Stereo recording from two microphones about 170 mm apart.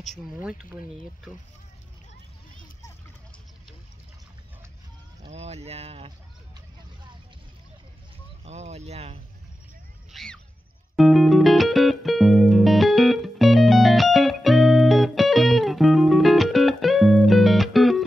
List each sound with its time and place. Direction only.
0.4 s speech: 5° right (ahead or behind)
5.2 s speech: 40° right (ahead or behind)
8.5 s speech: 40° right (ahead or behind)
10.1 s speech: 5° left (ahead or behind)
11.0 s music: centre (ahead or behind)